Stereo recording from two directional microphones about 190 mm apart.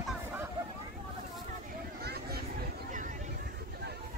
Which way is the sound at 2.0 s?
55° right (ahead or behind).